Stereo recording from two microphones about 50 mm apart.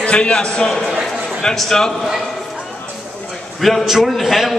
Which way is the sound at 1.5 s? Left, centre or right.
Centre.